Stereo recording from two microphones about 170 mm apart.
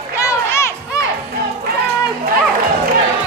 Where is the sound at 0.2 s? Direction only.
15° left (ahead or behind).